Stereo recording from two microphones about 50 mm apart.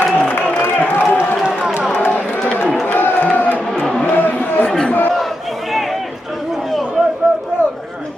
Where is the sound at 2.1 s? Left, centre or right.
Left.